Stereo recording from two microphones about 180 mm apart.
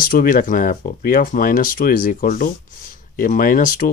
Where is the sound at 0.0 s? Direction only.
50° left (ahead or behind).